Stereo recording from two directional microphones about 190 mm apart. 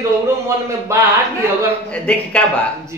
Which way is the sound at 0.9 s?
15° right (ahead or behind).